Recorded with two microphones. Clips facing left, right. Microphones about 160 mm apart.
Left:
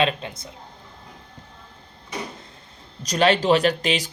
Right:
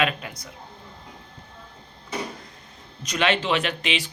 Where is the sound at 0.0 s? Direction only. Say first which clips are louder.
Left 3 dB; 25° left (ahead or behind).